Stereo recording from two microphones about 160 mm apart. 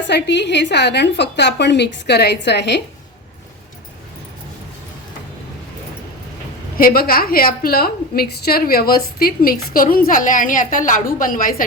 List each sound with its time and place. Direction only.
0.1 s a woman's voice: 90° left
6.7 s a woman's voice: 65° left (ahead or behind)